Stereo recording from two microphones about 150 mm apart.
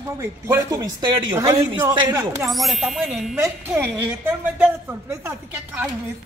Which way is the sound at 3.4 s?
15° right (ahead or behind).